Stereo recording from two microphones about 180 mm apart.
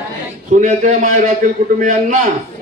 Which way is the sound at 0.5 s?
45° right (ahead or behind).